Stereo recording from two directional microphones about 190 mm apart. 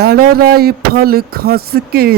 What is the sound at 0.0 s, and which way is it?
Speech, 55° right (ahead or behind).